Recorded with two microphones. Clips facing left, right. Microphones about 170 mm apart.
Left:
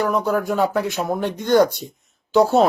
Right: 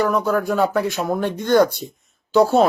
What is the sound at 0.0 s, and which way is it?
Speech, 15° left (ahead or behind).